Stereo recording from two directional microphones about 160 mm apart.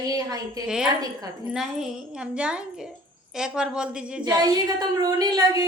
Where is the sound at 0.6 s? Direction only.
5° right (ahead or behind).